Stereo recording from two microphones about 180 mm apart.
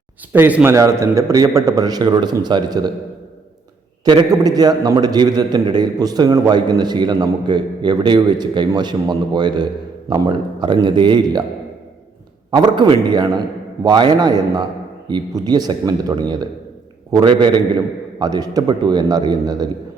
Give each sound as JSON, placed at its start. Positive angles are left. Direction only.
{"t": 0.3, "sound": "a man's voice", "side_deg": -10}
{"t": 4.0, "sound": "a man's voice", "side_deg": -20}
{"t": 12.5, "sound": "a man's voice", "side_deg": -25}